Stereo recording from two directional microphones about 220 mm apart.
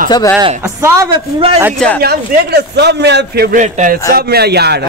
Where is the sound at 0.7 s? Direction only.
15° right (ahead or behind).